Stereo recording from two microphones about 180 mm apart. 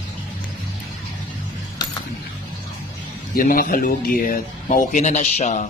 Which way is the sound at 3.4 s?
55° left (ahead or behind).